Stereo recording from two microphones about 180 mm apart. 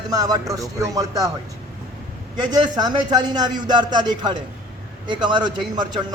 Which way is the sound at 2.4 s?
25° right (ahead or behind).